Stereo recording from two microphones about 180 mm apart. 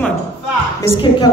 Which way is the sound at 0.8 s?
25° left (ahead or behind).